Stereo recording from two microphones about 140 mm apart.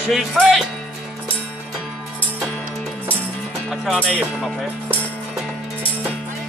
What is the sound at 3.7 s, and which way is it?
Speech, 5° left (ahead or behind).